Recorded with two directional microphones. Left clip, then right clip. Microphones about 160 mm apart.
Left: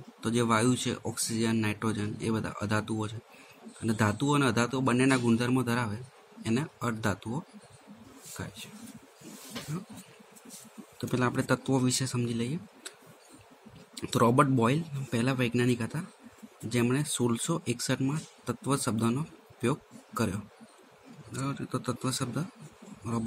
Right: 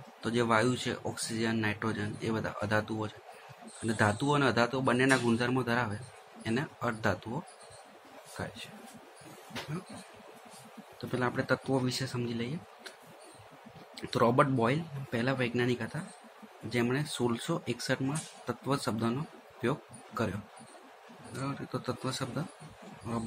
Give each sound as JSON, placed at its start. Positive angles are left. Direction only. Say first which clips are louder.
{"t": 0.2, "sound": "speech", "louder": "left 1 dB", "side_deg": 40}
{"t": 8.4, "sound": "speech", "louder": "right 3 dB", "side_deg": 30}
{"t": 11.0, "sound": "speech", "louder": "left 2 dB", "side_deg": 45}
{"t": 13.9, "sound": "speech", "louder": "left 2 dB", "side_deg": 45}
{"t": 21.3, "sound": "speech", "louder": "left 2 dB", "side_deg": 40}